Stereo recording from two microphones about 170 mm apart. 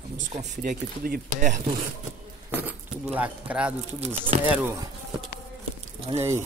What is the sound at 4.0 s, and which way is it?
Speech, 40° right (ahead or behind).